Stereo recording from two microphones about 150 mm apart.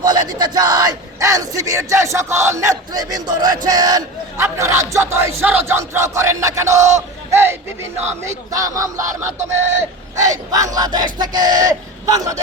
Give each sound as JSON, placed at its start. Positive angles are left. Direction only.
{"t": 0.0, "sound": "speech", "side_deg": -25}